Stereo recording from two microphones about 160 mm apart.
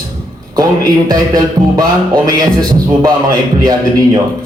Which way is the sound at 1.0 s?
25° right (ahead or behind).